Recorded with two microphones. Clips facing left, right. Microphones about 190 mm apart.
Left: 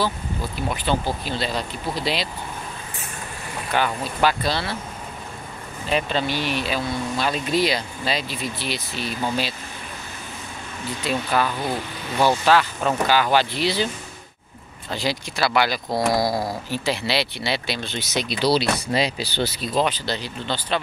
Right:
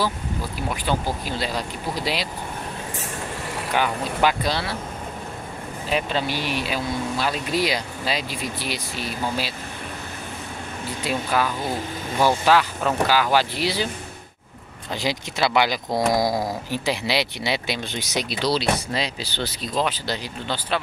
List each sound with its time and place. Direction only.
0.6 s speech: 10° right (ahead or behind)
3.7 s speech: 15° right (ahead or behind)
5.9 s speech: 5° right (ahead or behind)
11.1 s speech: 10° right (ahead or behind)
14.9 s speech: 15° right (ahead or behind)
18.4 s speech: 10° left (ahead or behind)
20.1 s speech: 10° right (ahead or behind)